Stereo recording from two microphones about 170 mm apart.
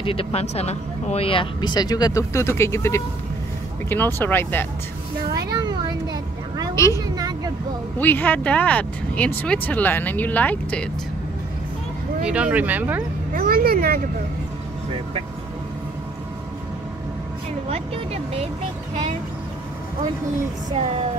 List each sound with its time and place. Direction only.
0.0 s speech: 35° left (ahead or behind); by 4.6 s 10° left (ahead or behind)
5.3 s a sound: 20° right (ahead or behind)
6.7 s a sound: 15° left (ahead or behind)
8.0 s speech: 10° left (ahead or behind)
12.3 s speech: 10° right (ahead or behind)
13.3 s speech: 60° right (ahead or behind)
17.6 s a woman's voice: 35° right (ahead or behind)